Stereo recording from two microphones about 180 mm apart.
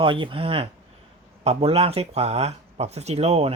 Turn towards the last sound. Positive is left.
turn(degrees=-35)  # may be behind; listen again after turning